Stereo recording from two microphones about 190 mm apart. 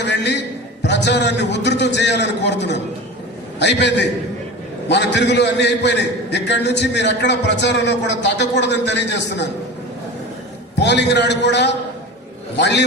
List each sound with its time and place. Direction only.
0.0 s a man's voice: 65° left (ahead or behind)
10.8 s a man's voice: 65° left (ahead or behind)